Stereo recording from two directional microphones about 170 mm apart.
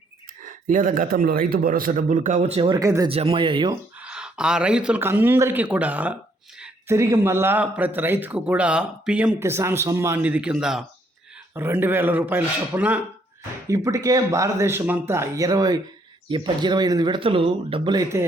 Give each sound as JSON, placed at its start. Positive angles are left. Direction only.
{"t": 0.7, "sound": "a man's voice", "side_deg": -50}
{"t": 3.1, "sound": "speech", "side_deg": -35}
{"t": 4.0, "sound": "a man's voice", "side_deg": -5}
{"t": 11.5, "sound": "a man's voice", "side_deg": -15}